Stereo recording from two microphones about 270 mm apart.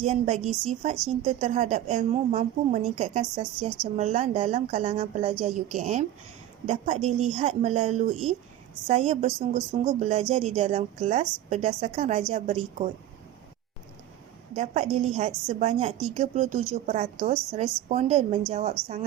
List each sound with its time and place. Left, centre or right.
0.0 s a woman's voice: right
14.5 s a woman's voice: right